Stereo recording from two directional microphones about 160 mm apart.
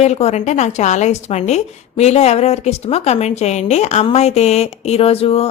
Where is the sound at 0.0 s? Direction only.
45° left (ahead or behind).